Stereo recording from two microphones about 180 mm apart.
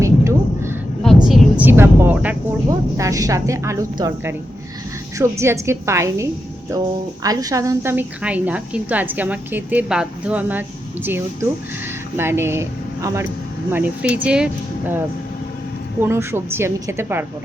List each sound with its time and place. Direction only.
0.0 s a sound: 15° right (ahead or behind)
1.0 s speech: centre (ahead or behind)
16.0 s speech: 15° right (ahead or behind)